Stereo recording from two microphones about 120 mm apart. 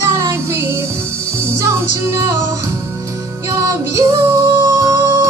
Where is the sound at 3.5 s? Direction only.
25° right (ahead or behind).